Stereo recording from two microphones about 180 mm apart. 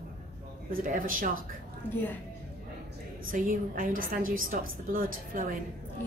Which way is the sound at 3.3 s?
50° right (ahead or behind).